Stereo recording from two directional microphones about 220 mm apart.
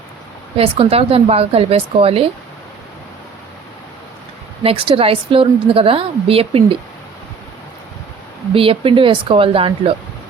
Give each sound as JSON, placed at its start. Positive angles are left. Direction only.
{"t": 0.5, "sound": "a woman's voice", "side_deg": -25}
{"t": 4.6, "sound": "a woman's voice", "side_deg": -25}
{"t": 8.5, "sound": "a woman's voice", "side_deg": -25}